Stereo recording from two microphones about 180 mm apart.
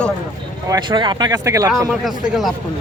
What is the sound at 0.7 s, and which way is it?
Speech, 25° right (ahead or behind).